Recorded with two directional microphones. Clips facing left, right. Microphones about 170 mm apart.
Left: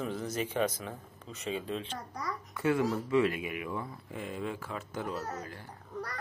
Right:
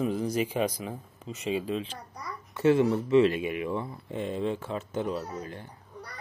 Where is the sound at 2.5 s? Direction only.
25° right (ahead or behind).